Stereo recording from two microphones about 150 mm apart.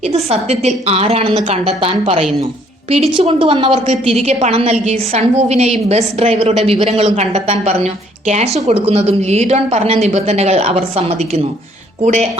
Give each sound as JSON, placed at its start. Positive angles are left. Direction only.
{"t": 0.1, "sound": "a woman's voice", "side_deg": -45}